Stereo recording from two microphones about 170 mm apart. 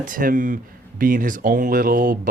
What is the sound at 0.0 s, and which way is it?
Speech, 55° right (ahead or behind).